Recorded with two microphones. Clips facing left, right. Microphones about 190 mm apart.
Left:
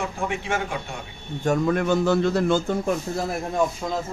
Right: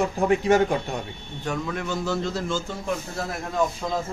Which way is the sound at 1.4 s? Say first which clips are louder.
Left 8 dB; 50° left (ahead or behind).